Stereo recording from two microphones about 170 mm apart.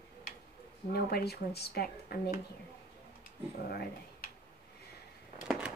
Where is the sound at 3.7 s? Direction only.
70° left (ahead or behind).